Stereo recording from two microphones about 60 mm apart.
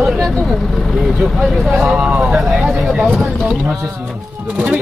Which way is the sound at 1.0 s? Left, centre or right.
Centre.